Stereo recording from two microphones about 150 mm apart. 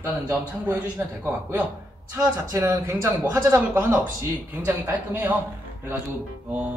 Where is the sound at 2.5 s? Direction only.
15° right (ahead or behind).